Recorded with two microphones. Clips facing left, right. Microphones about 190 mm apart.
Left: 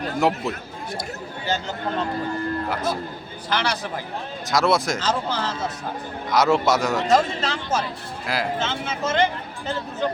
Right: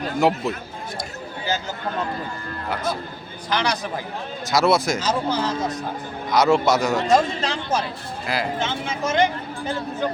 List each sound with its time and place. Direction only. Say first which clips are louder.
0.2 s a man's voice: right 2 dB; centre (ahead or behind)
2.6 s a man's voice: left 1 dB; centre (ahead or behind)
3.5 s speech: right 1 dB; 15° right (ahead or behind)
4.5 s a man's voice: right 2 dB; centre (ahead or behind)
4.9 s speech: right 2 dB; 15° right (ahead or behind)
6.3 s a man's voice: right 1 dB; centre (ahead or behind)
7.1 s speech: even; 15° right (ahead or behind)